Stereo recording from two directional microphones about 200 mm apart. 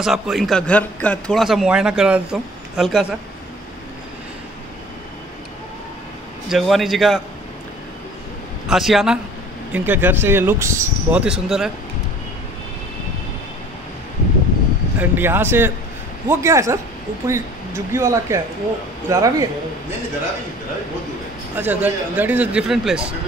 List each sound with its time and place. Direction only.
0.0 s a man's voice: centre (ahead or behind)
6.5 s a man's voice: centre (ahead or behind)
8.6 s a man's voice: centre (ahead or behind)
15.0 s speech: 10° right (ahead or behind)
21.5 s speech: 10° right (ahead or behind)